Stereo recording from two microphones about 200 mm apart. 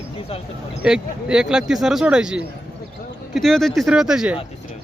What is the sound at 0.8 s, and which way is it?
Speech, 5° right (ahead or behind).